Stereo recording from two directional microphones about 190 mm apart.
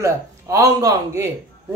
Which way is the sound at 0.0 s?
15° right (ahead or behind).